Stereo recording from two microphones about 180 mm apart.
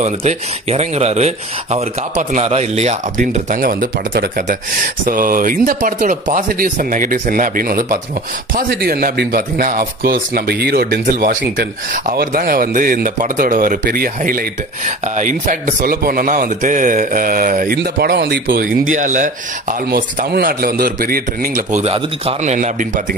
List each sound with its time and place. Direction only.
0.0 s a man's voice: 35° right (ahead or behind)
17.7 s a man's voice: 60° right (ahead or behind)
21.8 s speech: 35° right (ahead or behind)